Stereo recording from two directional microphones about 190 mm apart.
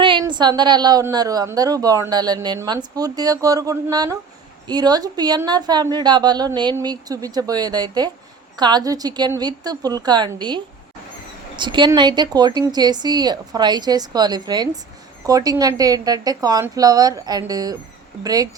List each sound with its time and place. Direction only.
0.0 s a woman's voice: 25° right (ahead or behind)